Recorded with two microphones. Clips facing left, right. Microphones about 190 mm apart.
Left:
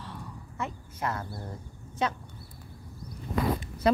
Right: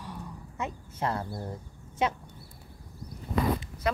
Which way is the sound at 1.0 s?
30° right (ahead or behind).